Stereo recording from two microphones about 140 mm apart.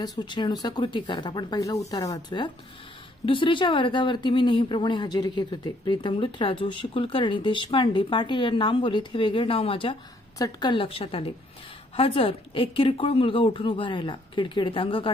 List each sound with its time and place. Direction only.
0.0 s speech: 30° left (ahead or behind)